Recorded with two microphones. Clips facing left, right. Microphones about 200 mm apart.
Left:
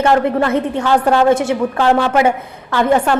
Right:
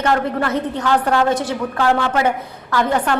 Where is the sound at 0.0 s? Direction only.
25° left (ahead or behind).